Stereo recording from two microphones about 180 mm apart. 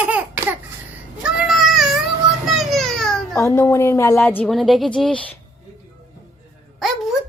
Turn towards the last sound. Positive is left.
turn(degrees=0)  # may be behind; listen again after turning